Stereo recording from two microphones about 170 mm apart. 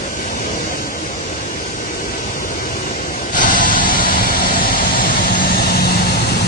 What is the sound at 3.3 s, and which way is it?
Spray, 50° left (ahead or behind).